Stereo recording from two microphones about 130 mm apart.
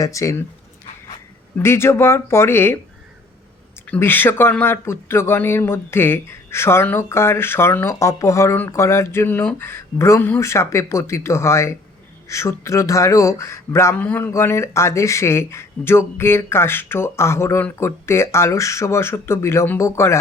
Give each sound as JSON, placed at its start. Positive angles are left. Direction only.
{"t": 0.0, "sound": "speech", "side_deg": 25}
{"t": 1.5, "sound": "speech", "side_deg": 20}
{"t": 3.8, "sound": "speech", "side_deg": 15}